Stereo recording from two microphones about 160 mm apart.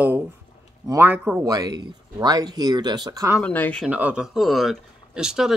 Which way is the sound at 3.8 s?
10° right (ahead or behind).